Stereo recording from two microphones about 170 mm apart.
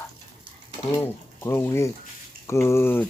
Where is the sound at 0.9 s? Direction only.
15° left (ahead or behind).